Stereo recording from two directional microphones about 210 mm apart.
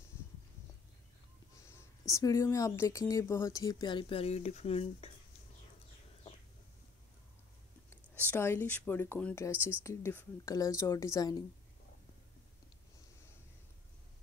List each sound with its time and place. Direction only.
2.0 s speech: 15° left (ahead or behind)
8.3 s speech: 10° left (ahead or behind)